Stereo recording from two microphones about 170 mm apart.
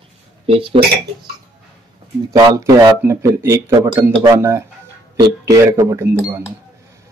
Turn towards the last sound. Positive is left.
turn(degrees=-15)  # may be behind; listen again after turning